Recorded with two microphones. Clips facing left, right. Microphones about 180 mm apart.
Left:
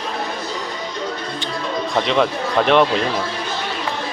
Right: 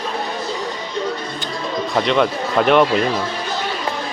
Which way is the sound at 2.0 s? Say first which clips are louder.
Right 1 dB; centre (ahead or behind).